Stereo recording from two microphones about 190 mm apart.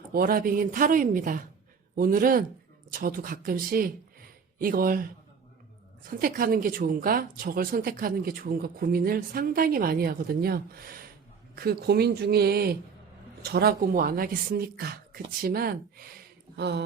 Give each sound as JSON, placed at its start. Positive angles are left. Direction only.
{"t": 0.1, "sound": "speech", "side_deg": -50}
{"t": 6.1, "sound": "speech", "side_deg": -50}
{"t": 16.6, "sound": "speech", "side_deg": -65}